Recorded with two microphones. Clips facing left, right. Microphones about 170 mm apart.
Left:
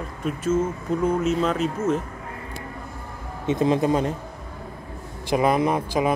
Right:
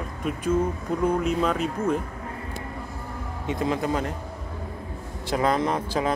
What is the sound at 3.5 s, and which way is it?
Speech, 20° left (ahead or behind).